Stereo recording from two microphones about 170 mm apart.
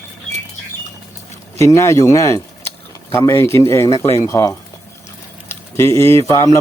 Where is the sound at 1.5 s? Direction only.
15° left (ahead or behind).